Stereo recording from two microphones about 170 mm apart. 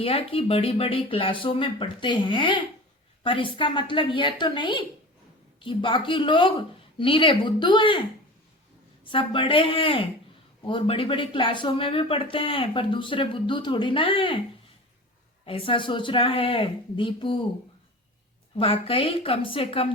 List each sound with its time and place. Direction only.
0.0 s speech: 35° left (ahead or behind)
9.0 s speech: 30° left (ahead or behind)
15.4 s speech: 30° left (ahead or behind)
18.5 s speech: 30° left (ahead or behind)